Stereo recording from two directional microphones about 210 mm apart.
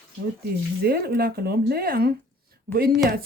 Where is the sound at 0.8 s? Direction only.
45° right (ahead or behind).